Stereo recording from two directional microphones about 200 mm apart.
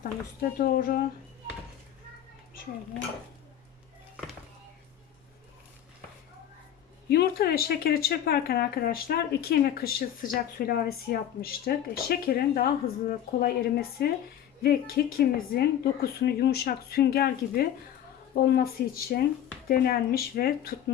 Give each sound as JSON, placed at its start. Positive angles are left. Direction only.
{"t": 0.6, "sound": "speech", "side_deg": 45}
{"t": 7.1, "sound": "speech", "side_deg": 50}